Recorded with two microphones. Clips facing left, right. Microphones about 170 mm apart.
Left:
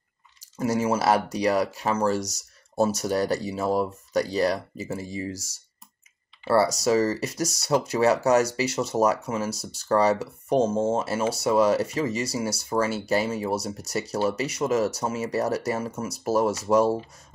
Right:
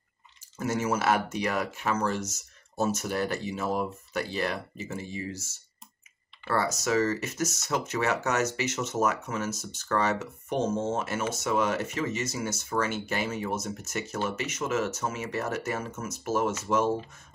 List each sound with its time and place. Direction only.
0.7 s speech: 35° left (ahead or behind)